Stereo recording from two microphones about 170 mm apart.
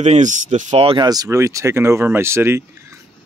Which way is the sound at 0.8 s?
30° right (ahead or behind).